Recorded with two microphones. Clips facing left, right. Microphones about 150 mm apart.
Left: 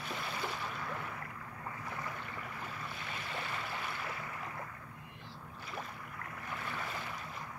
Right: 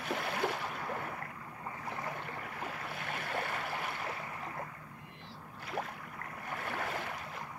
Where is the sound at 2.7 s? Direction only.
65° right (ahead or behind).